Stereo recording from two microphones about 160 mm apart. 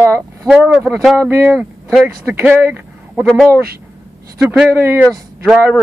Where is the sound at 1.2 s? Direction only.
15° right (ahead or behind).